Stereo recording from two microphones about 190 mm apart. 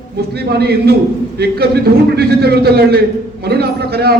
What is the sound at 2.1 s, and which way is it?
A man's voice, 55° right (ahead or behind).